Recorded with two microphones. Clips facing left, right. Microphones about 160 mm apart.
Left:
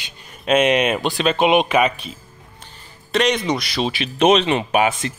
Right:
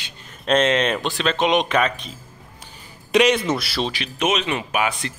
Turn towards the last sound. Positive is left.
turn(degrees=25)  # may be behind; listen again after turning